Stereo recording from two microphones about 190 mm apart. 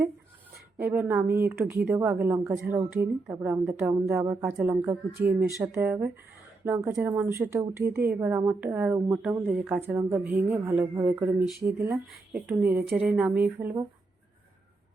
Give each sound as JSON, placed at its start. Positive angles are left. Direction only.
{"t": 0.8, "sound": "a woman's voice", "side_deg": -10}